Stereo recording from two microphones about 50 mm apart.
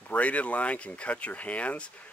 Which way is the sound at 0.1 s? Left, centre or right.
Left.